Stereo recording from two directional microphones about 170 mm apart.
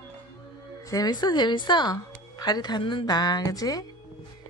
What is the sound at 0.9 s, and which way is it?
Speech, 25° left (ahead or behind).